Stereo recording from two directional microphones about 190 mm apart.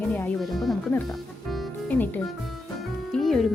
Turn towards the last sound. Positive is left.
turn(degrees=0)  # may be behind; listen again after turning